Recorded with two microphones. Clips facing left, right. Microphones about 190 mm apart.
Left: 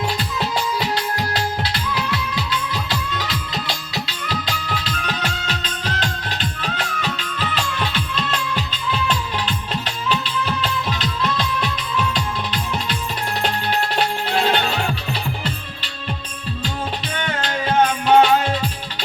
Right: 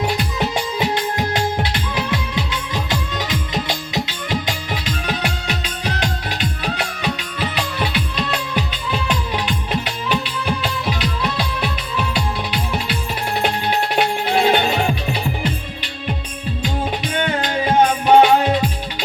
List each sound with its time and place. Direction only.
0.3 s music: 20° right (ahead or behind)
14.3 s music: 15° right (ahead or behind)
18.0 s music: 15° right (ahead or behind)